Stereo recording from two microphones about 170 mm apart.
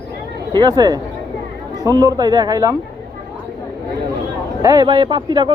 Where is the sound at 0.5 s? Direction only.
25° right (ahead or behind).